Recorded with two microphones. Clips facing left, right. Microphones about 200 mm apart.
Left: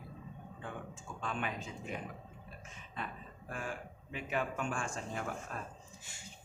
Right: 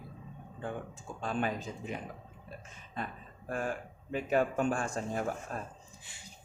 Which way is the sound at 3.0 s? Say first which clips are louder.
Right 4 dB; 40° right (ahead or behind).